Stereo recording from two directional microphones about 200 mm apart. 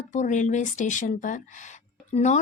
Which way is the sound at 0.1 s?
35° left (ahead or behind).